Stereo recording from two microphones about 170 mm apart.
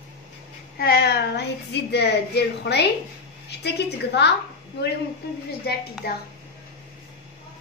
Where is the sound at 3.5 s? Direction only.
80° left.